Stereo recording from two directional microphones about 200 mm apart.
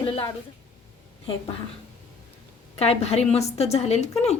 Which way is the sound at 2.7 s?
30° left (ahead or behind).